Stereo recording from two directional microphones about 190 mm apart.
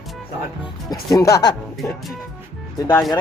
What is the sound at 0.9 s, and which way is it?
Speech, 20° left (ahead or behind).